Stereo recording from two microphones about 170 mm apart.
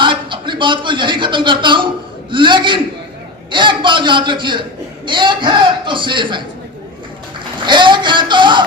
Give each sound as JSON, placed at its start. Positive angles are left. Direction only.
{"t": 0.0, "sound": "a man's voice", "side_deg": -30}